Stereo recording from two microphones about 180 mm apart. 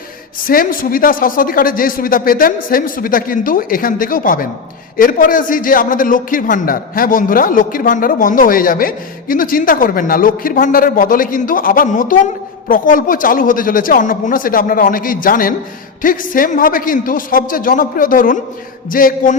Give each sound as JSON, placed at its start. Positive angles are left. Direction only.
{"t": 0.4, "sound": "a man's voice", "side_deg": 50}